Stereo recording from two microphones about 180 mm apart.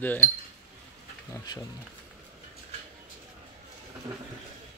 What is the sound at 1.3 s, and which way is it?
Speech, 25° left (ahead or behind).